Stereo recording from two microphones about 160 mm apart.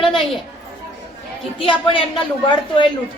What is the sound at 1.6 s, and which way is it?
A woman's voice, 35° left (ahead or behind).